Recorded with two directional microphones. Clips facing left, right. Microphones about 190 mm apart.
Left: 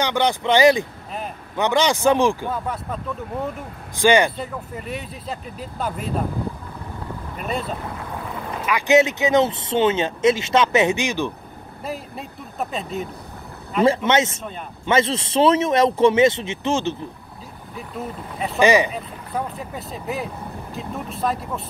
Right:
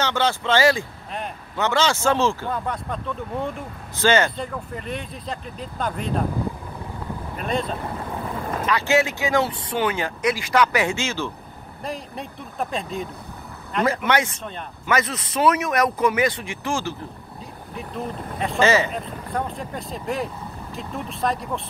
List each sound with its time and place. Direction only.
0.0 s speech: 15° left (ahead or behind)
7.3 s speech: 5° left (ahead or behind)
11.8 s speech: 5° left (ahead or behind)
13.8 s speech: 25° left (ahead or behind)
17.7 s speech: 5° left (ahead or behind)
18.6 s speech: 15° left (ahead or behind)
19.3 s speech: 5° left (ahead or behind)